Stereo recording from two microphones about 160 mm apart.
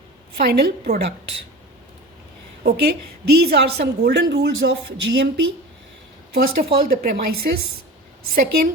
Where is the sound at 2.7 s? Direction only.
90° right.